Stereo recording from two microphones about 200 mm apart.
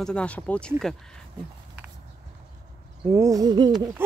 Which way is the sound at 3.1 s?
15° right (ahead or behind).